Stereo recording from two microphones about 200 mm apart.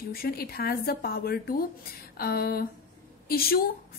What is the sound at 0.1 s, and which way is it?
A woman's voice, 50° left (ahead or behind).